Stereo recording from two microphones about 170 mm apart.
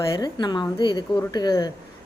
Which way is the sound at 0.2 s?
25° left (ahead or behind).